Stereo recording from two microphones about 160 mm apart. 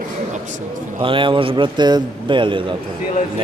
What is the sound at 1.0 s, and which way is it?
A man's voice, 30° right (ahead or behind).